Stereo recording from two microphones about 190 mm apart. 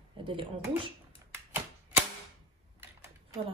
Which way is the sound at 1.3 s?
10° right (ahead or behind).